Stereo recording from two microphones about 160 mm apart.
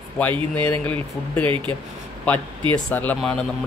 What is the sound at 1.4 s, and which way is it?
Speech, 35° right (ahead or behind).